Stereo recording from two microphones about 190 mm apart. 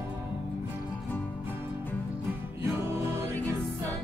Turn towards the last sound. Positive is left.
turn(degrees=-10)  # may be behind; listen again after turning